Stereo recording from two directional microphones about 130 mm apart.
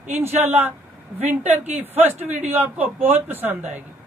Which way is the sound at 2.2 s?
60° right (ahead or behind).